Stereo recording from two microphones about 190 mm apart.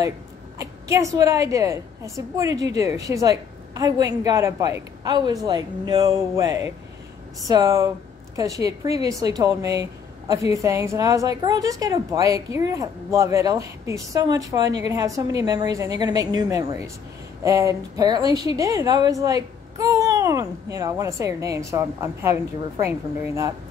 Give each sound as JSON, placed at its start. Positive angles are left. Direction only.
{"t": 0.6, "sound": "a woman's voice", "side_deg": -15}